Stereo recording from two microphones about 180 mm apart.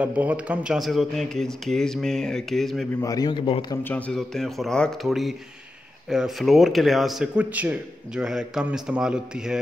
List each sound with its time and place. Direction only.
0.0 s speech: 10° right (ahead or behind)
3.0 s a man's voice: 20° left (ahead or behind)
3.8 s speech: 10° left (ahead or behind)